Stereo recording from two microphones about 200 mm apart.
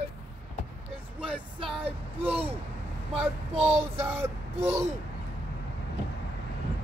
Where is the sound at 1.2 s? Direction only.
25° right (ahead or behind).